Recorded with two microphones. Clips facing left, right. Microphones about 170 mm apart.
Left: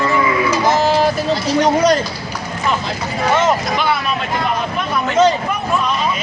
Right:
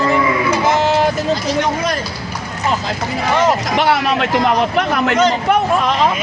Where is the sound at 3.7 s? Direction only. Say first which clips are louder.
Right 4 dB; 75° right (ahead or behind).